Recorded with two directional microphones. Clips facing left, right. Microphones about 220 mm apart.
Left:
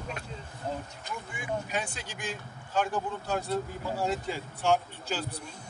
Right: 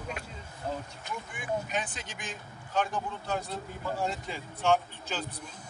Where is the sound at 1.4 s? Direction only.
10° left (ahead or behind).